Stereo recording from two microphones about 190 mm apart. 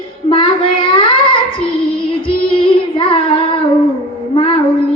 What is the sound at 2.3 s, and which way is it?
Child singing, 25° left (ahead or behind).